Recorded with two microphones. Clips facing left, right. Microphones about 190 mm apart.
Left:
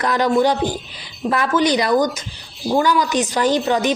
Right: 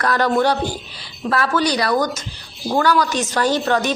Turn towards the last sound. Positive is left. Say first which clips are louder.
# left 1 dB
turn(degrees=15)  # may be behind; listen again after turning